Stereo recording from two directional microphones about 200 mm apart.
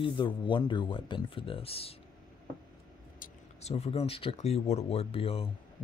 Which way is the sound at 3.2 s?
35° left (ahead or behind).